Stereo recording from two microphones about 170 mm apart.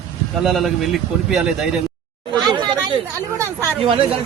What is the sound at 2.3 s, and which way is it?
Chatter, 25° right (ahead or behind).